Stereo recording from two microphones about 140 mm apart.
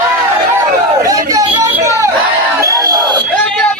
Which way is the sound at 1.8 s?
20° right (ahead or behind).